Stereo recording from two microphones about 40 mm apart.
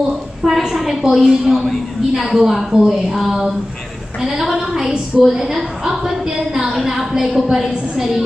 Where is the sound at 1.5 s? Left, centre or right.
Centre.